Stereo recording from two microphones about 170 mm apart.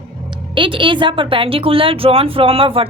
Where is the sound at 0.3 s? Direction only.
30° right (ahead or behind).